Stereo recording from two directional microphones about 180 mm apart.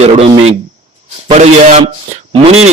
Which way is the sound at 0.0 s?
35° right (ahead or behind).